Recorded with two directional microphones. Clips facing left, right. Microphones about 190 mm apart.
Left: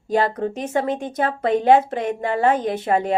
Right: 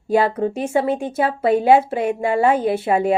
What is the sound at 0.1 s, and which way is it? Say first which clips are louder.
A woman's voice: right 3 dB; 10° right (ahead or behind).